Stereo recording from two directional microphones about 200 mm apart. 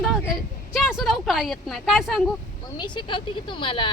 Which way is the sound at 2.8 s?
25° left (ahead or behind).